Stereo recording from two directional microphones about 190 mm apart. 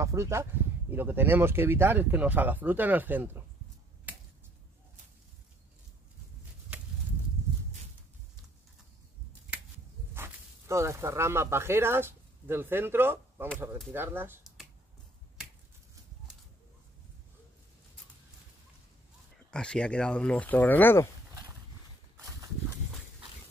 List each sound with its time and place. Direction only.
0.0 s speech: 15° right (ahead or behind)
4.1 s a sound: 10° right (ahead or behind)
10.1 s speech: 15° right (ahead or behind)
19.5 s speech: 5° left (ahead or behind)
22.1 s horse: 15° right (ahead or behind)